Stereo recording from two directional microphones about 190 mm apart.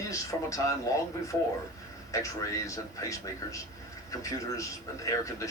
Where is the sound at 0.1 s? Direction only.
15° left (ahead or behind).